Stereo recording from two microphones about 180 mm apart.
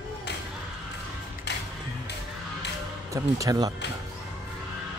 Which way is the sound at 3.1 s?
20° right (ahead or behind).